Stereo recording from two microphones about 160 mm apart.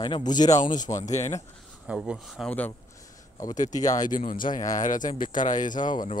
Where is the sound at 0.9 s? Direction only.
45° left (ahead or behind).